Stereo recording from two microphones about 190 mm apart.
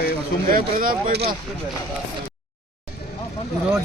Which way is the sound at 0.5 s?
50° right (ahead or behind).